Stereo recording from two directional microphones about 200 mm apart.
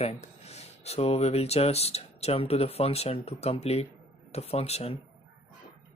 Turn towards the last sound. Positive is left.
turn(degrees=30)  # may be behind; listen again after turning